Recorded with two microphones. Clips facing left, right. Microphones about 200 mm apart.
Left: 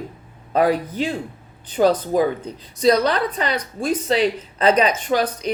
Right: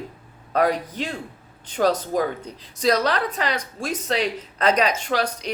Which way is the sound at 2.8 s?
Centre (ahead or behind).